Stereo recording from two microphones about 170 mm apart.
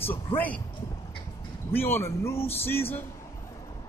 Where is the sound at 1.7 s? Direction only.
15° left (ahead or behind).